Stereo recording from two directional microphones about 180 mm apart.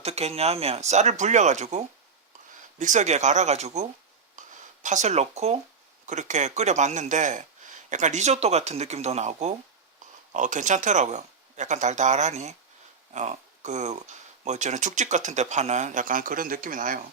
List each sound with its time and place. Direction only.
0.0 s speech: 35° right (ahead or behind)
4.4 s a sound: 45° right (ahead or behind)
6.1 s speech: 40° right (ahead or behind)